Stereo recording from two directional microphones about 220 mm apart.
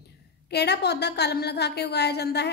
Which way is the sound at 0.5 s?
50° left (ahead or behind).